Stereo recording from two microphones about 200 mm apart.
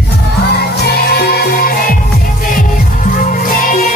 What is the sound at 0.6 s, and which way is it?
Music, 50° left (ahead or behind).